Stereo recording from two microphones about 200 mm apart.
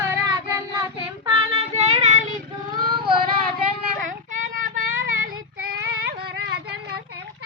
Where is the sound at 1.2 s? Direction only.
30° right (ahead or behind).